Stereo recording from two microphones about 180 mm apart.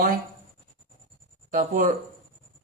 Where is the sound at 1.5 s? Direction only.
45° right (ahead or behind).